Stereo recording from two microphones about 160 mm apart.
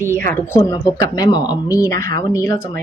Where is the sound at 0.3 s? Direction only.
15° left (ahead or behind).